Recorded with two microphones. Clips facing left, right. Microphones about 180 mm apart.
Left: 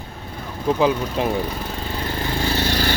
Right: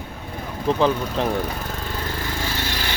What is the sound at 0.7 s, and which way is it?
Speech, 5° left (ahead or behind).